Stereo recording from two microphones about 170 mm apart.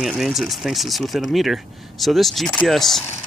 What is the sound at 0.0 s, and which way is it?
Speech, centre (ahead or behind).